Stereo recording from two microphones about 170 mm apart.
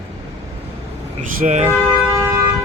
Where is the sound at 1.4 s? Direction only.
45° right (ahead or behind).